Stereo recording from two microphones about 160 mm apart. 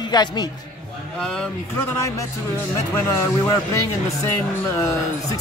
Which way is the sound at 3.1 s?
20° left (ahead or behind).